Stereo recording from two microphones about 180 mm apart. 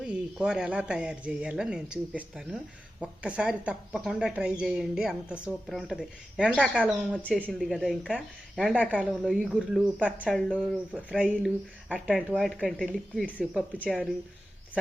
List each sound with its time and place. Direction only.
0.0 s speech: 5° right (ahead or behind)
7.2 s speech: 10° left (ahead or behind)